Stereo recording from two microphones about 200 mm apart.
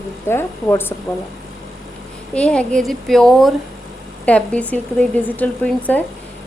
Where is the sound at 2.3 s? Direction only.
5° left (ahead or behind).